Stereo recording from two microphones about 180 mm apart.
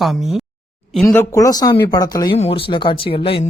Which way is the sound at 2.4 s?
30° left (ahead or behind).